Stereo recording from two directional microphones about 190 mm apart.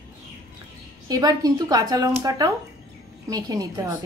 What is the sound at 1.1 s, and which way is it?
Speech, 20° right (ahead or behind).